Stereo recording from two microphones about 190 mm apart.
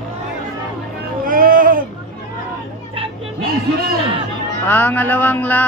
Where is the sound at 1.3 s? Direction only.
45° right (ahead or behind).